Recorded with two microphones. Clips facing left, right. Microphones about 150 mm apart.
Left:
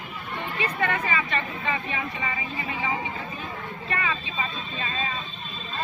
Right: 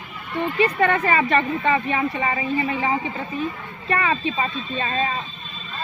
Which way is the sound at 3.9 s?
45° right (ahead or behind).